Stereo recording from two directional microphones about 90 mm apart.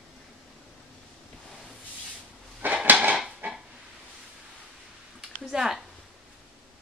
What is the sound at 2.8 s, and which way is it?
Dog, 20° right (ahead or behind).